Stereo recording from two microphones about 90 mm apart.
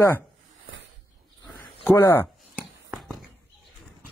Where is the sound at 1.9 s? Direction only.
25° left (ahead or behind).